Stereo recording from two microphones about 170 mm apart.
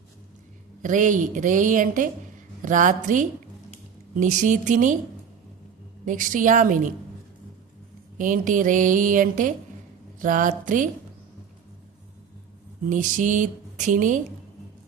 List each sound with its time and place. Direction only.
0.8 s a woman's voice: 50° right (ahead or behind)
6.1 s a woman's voice: 50° right (ahead or behind)
8.2 s a woman's voice: 50° right (ahead or behind)
12.9 s a woman's voice: 50° right (ahead or behind)